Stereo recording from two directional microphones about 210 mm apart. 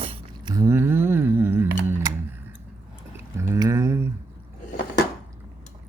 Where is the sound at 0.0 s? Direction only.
25° right (ahead or behind).